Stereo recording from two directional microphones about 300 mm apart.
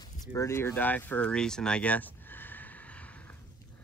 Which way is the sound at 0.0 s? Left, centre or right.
Left.